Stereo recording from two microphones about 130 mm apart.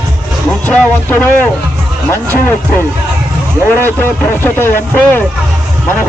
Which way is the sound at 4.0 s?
20° left (ahead or behind).